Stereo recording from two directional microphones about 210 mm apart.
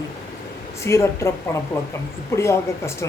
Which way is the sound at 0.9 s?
15° left (ahead or behind).